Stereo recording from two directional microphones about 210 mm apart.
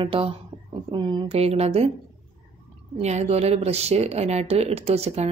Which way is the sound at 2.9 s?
30° right (ahead or behind).